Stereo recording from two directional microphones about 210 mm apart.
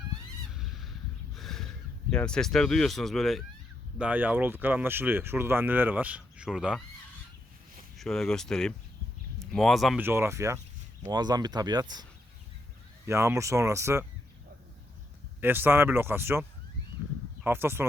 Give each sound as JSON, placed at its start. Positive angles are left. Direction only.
{"t": 0.5, "sound": "goose", "side_deg": 0}
{"t": 1.4, "sound": "a sound", "side_deg": 0}
{"t": 2.0, "sound": "speech", "side_deg": 5}
{"t": 7.9, "sound": "speech", "side_deg": 0}
{"t": 10.1, "sound": "speech", "side_deg": -10}
{"t": 13.1, "sound": "speech", "side_deg": -15}
{"t": 15.4, "sound": "speech", "side_deg": -10}